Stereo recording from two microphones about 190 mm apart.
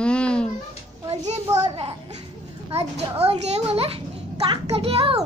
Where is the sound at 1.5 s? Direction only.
25° right (ahead or behind).